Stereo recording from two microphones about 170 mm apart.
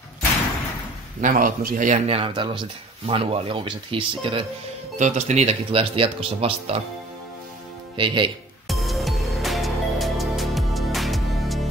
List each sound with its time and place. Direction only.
1.2 s speech: 55° right (ahead or behind); by 4.5 s 30° right (ahead or behind)
4.9 s speech: 45° right (ahead or behind)
7.9 s speech: 30° right (ahead or behind)
8.6 s music: centre (ahead or behind)